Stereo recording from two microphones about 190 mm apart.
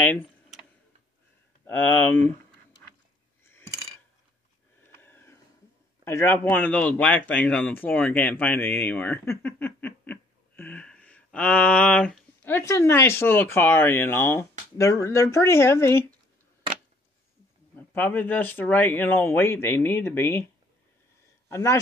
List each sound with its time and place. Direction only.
0.0 s computer keyboard: 10° left (ahead or behind)
1.8 s speech: 10° left (ahead or behind)
3.4 s a sound: 10° left (ahead or behind)
4.9 s a sound: 10° left (ahead or behind)
6.0 s speech: 15° left (ahead or behind)
17.7 s speech: 10° left (ahead or behind)
21.5 s a man's voice: 15° left (ahead or behind)